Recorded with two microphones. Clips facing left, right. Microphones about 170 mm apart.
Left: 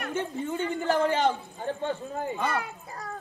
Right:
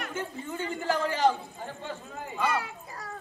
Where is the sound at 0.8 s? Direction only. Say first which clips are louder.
Left 1 dB; 25° left (ahead or behind).